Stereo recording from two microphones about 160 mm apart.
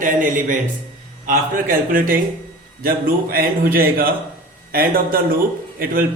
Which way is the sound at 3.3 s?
65° right (ahead or behind).